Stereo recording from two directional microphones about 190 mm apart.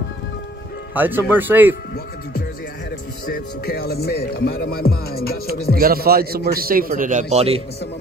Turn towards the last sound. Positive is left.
turn(degrees=-35)  # may be behind; listen again after turning